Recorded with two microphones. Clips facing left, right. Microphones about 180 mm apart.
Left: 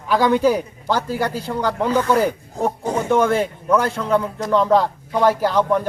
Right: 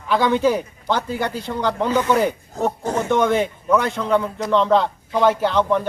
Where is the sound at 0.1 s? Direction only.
10° left (ahead or behind).